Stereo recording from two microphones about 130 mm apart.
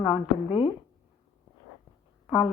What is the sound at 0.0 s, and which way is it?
Speech, 40° left (ahead or behind).